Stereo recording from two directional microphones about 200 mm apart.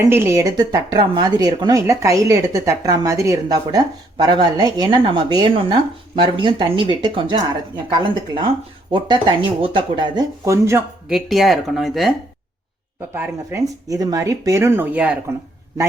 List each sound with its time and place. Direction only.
0.1 s a woman's voice: 10° right (ahead or behind)
11.1 s speech: centre (ahead or behind)
13.1 s speech: 10° right (ahead or behind)